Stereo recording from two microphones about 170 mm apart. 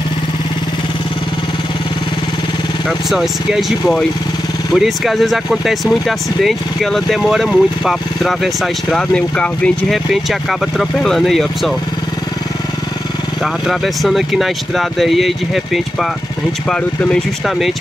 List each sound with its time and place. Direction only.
3.1 s speech: centre (ahead or behind)
13.4 s speech: centre (ahead or behind)